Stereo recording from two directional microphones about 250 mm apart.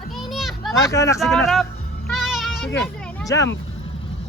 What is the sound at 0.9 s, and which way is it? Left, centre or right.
Speech, centre.